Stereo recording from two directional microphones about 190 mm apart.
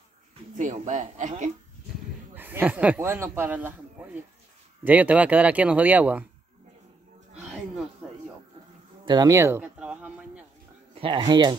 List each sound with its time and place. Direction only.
0.6 s speech: 40° right (ahead or behind)
2.3 s speech: 10° right (ahead or behind)
8.0 s music: centre (ahead or behind)
9.0 s a man's voice: 20° right (ahead or behind)
11.0 s speech: 25° right (ahead or behind)